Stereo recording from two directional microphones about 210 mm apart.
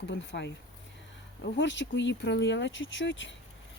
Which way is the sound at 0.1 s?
60° left (ahead or behind).